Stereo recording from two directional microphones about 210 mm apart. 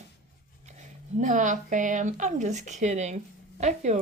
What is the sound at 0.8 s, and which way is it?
Speech, 35° right (ahead or behind).